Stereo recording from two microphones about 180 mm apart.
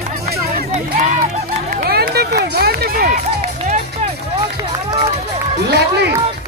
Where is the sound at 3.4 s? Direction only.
40° right (ahead or behind).